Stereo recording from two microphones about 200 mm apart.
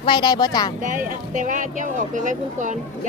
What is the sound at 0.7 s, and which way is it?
Speech, 40° right (ahead or behind).